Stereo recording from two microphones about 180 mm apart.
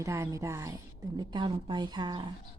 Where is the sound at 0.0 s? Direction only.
15° right (ahead or behind).